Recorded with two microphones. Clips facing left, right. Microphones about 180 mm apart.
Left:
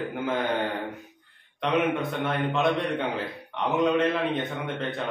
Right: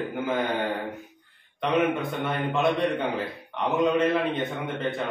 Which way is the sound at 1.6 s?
Centre (ahead or behind).